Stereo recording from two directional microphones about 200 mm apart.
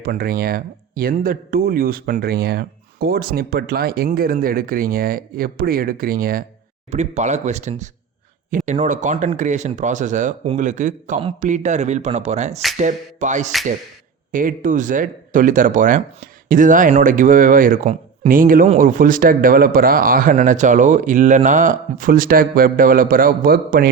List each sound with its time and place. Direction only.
0.0 s speech: 45° right (ahead or behind)
6.9 s speech: 35° right (ahead or behind)